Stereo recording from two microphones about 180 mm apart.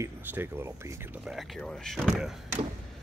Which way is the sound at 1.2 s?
Centre (ahead or behind).